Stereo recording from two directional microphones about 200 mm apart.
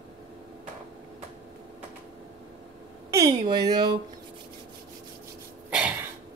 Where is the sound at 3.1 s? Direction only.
15° right (ahead or behind).